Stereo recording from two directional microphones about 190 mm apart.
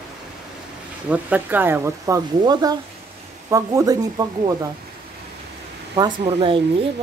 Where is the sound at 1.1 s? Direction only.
10° right (ahead or behind).